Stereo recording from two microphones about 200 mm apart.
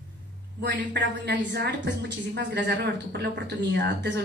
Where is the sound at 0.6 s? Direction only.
55° right (ahead or behind).